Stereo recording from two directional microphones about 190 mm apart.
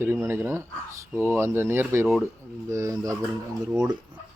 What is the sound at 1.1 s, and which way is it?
Speech, 10° left (ahead or behind).